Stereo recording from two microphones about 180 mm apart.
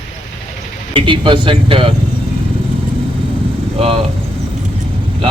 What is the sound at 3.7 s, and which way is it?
Speech, 35° right (ahead or behind).